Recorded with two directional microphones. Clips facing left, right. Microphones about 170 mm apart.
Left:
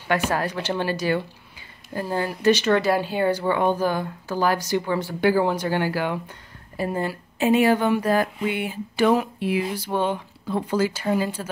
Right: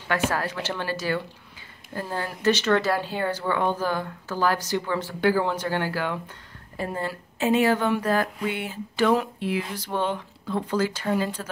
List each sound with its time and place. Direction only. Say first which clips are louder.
0.3 s speech: left 3 dB; 20° left (ahead or behind)